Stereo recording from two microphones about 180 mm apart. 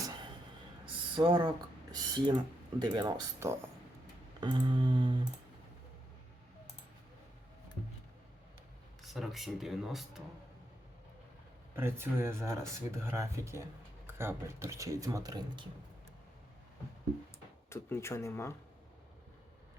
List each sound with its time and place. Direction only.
0.9 s a sound: 25° right (ahead or behind)
1.9 s speech: 25° right (ahead or behind)
4.4 s a sound: 25° right (ahead or behind)
9.0 s speech: centre (ahead or behind)
11.8 s speech: 10° right (ahead or behind)
17.7 s speech: 15° left (ahead or behind)